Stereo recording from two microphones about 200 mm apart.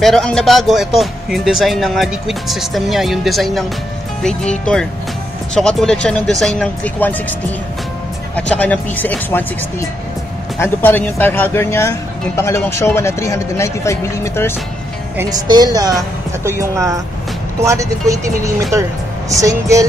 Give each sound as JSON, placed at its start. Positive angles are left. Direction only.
{"t": 0.0, "sound": "speech", "side_deg": 5}
{"t": 8.4, "sound": "speech", "side_deg": 5}
{"t": 15.4, "sound": "a woman's voice", "side_deg": -20}